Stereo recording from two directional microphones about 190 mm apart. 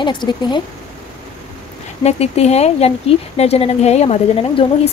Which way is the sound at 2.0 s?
35° left (ahead or behind).